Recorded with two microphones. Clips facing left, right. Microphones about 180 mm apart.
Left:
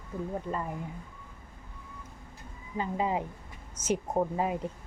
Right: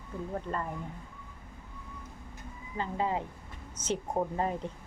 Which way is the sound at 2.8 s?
15° left (ahead or behind).